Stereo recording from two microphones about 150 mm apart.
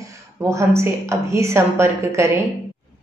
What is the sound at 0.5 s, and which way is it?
A woman's voice, 20° right (ahead or behind).